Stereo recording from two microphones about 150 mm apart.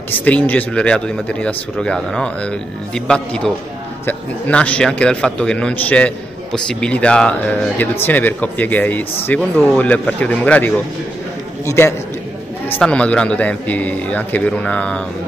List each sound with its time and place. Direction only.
0.1 s a man's voice: 10° left (ahead or behind)
12.7 s a man's voice: 5° left (ahead or behind)